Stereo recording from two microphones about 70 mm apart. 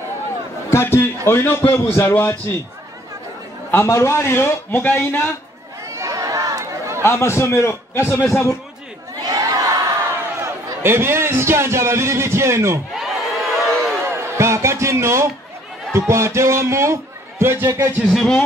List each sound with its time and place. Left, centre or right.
0.7 s a man's voice: left
3.7 s a man's voice: left
5.9 s chatter: right
7.0 s a man's voice: left
9.2 s crowd: right
10.8 s a man's voice: right
12.9 s crowd: centre
14.0 s music: right
15.9 s a man's voice: right
18.0 s speech: centre